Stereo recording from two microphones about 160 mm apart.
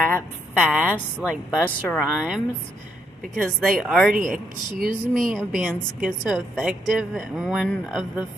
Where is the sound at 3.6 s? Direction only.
Centre (ahead or behind).